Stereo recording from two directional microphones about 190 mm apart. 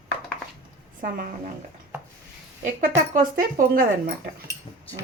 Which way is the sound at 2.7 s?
45° right (ahead or behind).